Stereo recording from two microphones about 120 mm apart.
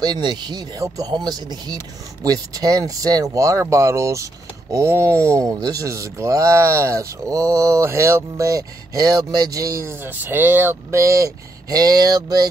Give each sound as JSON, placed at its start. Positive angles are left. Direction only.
{"t": 0.0, "sound": "speech", "side_deg": -35}